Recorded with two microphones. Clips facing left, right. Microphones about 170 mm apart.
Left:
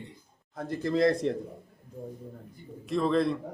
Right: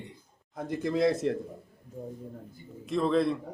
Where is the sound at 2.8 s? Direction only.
Centre (ahead or behind).